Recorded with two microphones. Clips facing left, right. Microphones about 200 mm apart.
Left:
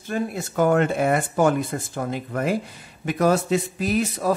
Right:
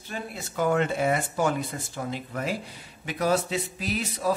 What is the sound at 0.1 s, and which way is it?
Speech, 50° left (ahead or behind).